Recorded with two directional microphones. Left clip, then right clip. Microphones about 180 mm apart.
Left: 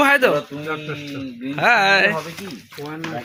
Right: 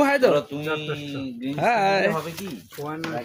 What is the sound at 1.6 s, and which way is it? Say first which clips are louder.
Speech: left 6 dB; centre (ahead or behind).